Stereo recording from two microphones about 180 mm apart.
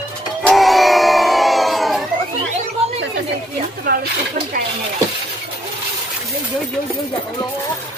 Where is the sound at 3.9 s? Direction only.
55° right (ahead or behind).